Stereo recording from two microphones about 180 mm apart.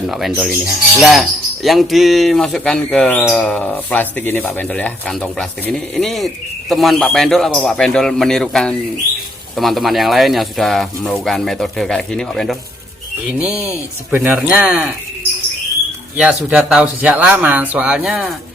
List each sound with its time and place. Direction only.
0.1 s speech: centre (ahead or behind)
16.1 s speech: 5° right (ahead or behind)